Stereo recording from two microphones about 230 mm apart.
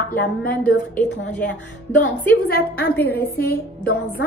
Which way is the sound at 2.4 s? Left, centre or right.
Left.